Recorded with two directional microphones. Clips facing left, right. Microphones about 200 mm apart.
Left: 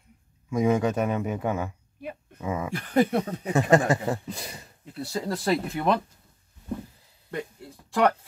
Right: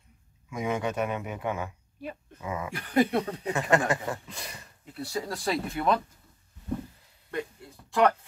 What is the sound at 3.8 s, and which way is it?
Speech, 25° left (ahead or behind).